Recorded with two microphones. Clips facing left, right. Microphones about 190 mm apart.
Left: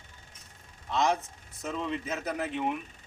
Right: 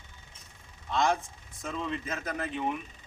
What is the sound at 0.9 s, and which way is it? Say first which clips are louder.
Speech: even; 5° left (ahead or behind).